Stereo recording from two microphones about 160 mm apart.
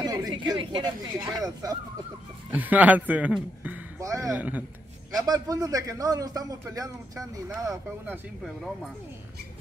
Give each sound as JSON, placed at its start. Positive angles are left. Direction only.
{"t": 0.0, "sound": "speech", "side_deg": -25}
{"t": 2.5, "sound": "a man's voice", "side_deg": -10}
{"t": 3.6, "sound": "a sound", "side_deg": -15}
{"t": 4.4, "sound": "a man's voice", "side_deg": -10}
{"t": 5.1, "sound": "a man's voice", "side_deg": -25}